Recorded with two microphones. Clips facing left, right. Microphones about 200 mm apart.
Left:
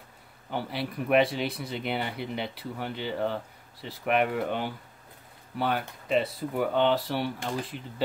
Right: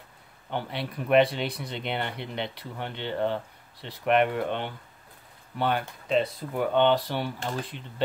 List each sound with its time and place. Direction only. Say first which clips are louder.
0.5 s speech: even; 5° left (ahead or behind)